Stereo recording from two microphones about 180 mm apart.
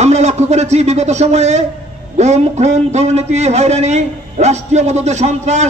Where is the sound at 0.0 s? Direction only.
40° right (ahead or behind).